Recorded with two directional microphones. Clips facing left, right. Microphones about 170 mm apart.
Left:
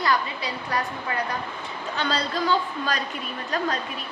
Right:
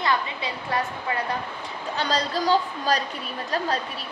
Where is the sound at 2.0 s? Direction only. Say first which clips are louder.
Right 1 dB; 40° right (ahead or behind).